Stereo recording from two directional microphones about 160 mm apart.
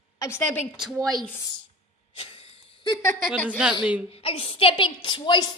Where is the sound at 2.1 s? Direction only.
35° left (ahead or behind).